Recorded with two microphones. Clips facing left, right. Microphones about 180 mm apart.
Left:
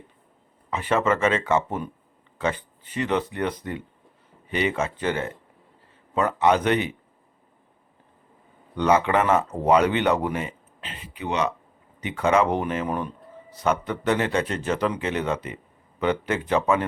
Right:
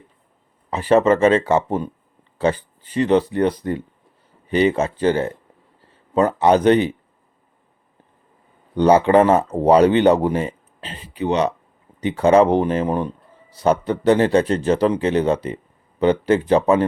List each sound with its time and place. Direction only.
0.7 s speech: 35° right (ahead or behind)
8.7 s speech: 30° right (ahead or behind)